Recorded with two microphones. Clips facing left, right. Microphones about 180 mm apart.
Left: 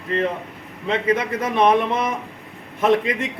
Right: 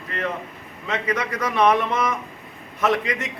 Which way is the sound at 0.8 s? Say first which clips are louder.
Left 5 dB; 30° left (ahead or behind).